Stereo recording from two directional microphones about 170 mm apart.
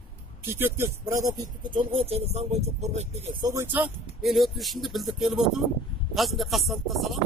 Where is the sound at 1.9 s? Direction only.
35° right (ahead or behind).